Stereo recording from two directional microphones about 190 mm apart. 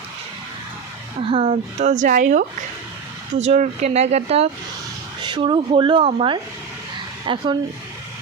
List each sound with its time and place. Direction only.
1.3 s speech: 30° right (ahead or behind)